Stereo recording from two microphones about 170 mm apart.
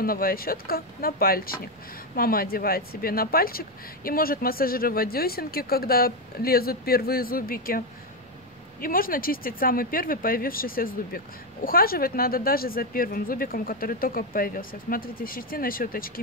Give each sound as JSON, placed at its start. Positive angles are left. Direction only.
{"t": 0.0, "sound": "speech", "side_deg": 60}
{"t": 8.8, "sound": "speech", "side_deg": 55}